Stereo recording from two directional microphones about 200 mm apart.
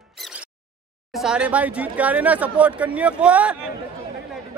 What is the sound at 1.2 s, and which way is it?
A man's voice, 5° right (ahead or behind).